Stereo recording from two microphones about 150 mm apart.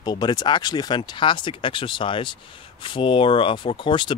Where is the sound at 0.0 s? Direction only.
30° left (ahead or behind).